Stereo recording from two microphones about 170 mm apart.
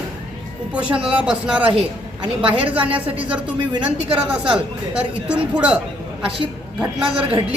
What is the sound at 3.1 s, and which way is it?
Speech, 5° right (ahead or behind).